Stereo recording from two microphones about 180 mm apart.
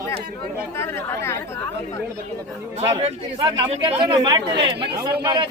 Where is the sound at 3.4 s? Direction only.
25° right (ahead or behind).